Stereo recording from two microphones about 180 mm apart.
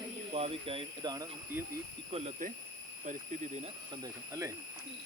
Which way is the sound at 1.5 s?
10° right (ahead or behind).